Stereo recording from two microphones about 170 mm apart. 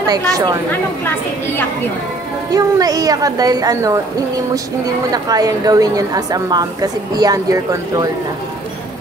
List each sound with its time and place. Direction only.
0.0 s a woman's voice: 20° right (ahead or behind)
2.5 s a woman's voice: 20° right (ahead or behind)
5.1 s a woman's voice: 20° right (ahead or behind)